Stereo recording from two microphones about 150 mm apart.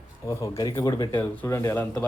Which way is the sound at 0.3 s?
20° left (ahead or behind).